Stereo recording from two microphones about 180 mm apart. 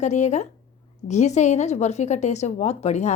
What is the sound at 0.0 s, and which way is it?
A woman's voice, 40° left (ahead or behind).